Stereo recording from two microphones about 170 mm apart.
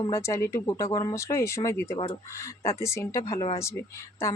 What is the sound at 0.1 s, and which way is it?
Speech, 15° left (ahead or behind).